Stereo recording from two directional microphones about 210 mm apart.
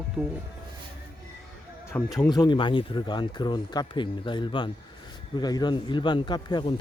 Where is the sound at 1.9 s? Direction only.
10° left (ahead or behind).